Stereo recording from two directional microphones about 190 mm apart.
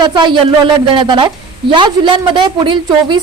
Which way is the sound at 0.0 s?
25° right (ahead or behind).